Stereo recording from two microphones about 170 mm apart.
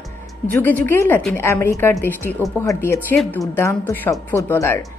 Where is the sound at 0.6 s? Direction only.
10° left (ahead or behind).